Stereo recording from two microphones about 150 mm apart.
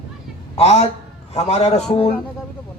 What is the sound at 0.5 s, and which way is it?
A man's voice, 45° left (ahead or behind).